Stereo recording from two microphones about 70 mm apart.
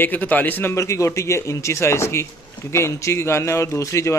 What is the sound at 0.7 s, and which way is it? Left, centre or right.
A man's voice, left.